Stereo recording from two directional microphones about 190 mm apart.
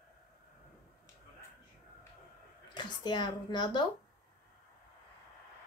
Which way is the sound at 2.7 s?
25° left (ahead or behind).